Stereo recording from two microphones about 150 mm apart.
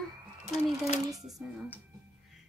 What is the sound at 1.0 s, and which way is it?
Speech, 25° right (ahead or behind).